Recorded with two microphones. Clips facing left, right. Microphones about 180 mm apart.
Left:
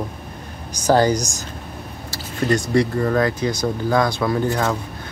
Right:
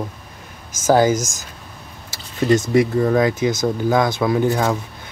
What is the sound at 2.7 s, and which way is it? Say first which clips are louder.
Speech: right 2 dB; 5° right (ahead or behind).